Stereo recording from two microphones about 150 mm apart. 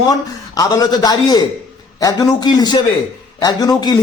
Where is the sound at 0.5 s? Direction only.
25° left (ahead or behind).